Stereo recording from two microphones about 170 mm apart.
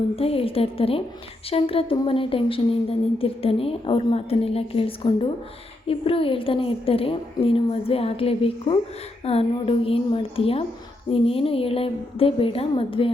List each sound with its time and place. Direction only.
0.2 s a woman's voice: 35° left (ahead or behind)